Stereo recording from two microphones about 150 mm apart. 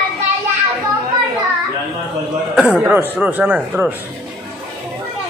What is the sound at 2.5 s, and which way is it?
Speech, 10° right (ahead or behind).